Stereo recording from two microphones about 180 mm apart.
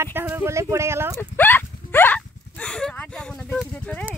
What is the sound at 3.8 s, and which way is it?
Clip-clop, 5° left (ahead or behind).